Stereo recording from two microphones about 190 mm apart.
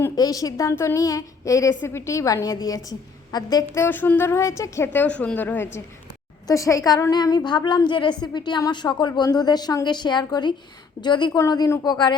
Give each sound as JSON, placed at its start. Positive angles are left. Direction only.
{"t": 0.0, "sound": "a woman's voice", "side_deg": 20}